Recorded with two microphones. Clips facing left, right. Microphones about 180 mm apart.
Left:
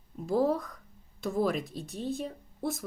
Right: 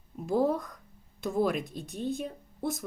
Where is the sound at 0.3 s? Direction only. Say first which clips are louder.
Even; 20° right (ahead or behind).